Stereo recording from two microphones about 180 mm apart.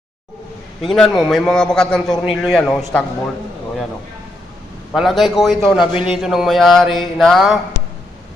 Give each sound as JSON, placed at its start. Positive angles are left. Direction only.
{"t": 0.8, "sound": "mantra", "side_deg": 0}
{"t": 4.9, "sound": "mantra", "side_deg": 0}
{"t": 5.8, "sound": "a man's voice", "side_deg": 30}
{"t": 6.1, "sound": "mantra", "side_deg": 0}